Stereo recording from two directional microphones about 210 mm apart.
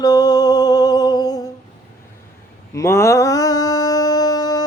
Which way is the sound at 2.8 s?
15° left (ahead or behind).